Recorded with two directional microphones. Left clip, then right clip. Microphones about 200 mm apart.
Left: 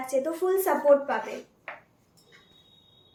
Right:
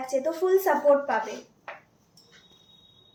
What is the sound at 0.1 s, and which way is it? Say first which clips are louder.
A woman's voice: right 2 dB; 15° left (ahead or behind).